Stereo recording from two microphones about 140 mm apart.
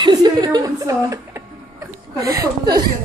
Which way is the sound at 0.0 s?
30° right (ahead or behind).